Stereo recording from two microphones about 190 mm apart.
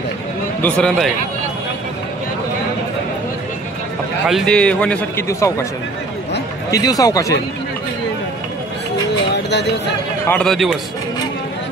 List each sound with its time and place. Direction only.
0.6 s a man's voice: 5° left (ahead or behind)
4.3 s a man's voice: centre (ahead or behind)
6.7 s speech: 20° left (ahead or behind)
9.3 s music: 65° left (ahead or behind)
10.2 s a man's voice: 5° left (ahead or behind)